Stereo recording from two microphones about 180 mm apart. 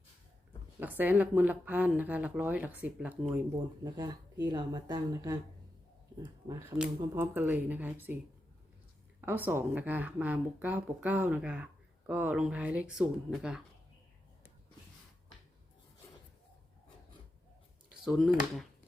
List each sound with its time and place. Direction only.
0.8 s speech: 10° right (ahead or behind)
3.8 s speech: 20° right (ahead or behind)
6.5 s speech: 15° right (ahead or behind)
9.2 s speech: 10° right (ahead or behind)
18.0 s speech: centre (ahead or behind)